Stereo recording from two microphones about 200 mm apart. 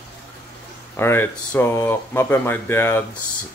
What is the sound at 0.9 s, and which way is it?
Speech, 10° left (ahead or behind).